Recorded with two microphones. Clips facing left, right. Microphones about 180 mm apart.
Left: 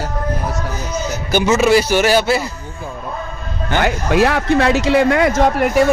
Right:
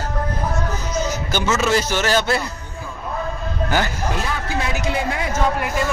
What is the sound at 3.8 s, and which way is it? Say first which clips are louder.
Speech: left 10 dB; 75° left (ahead or behind).